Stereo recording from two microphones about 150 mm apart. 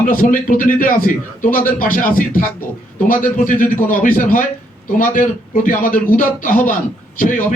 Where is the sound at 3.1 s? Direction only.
65° left (ahead or behind).